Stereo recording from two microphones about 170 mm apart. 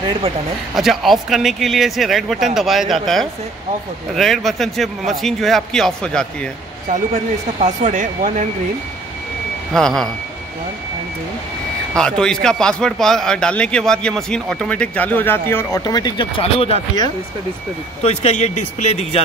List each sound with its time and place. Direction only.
0.7 s a man's voice: centre (ahead or behind)
7.6 s speech: 45° right (ahead or behind)
9.8 s a man's voice: 5° left (ahead or behind)
12.0 s a man's voice: 5° left (ahead or behind); by 16.8 s 35° left (ahead or behind)
18.0 s speech: 40° left (ahead or behind)